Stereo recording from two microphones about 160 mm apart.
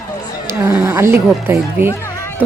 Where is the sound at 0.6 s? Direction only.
15° right (ahead or behind).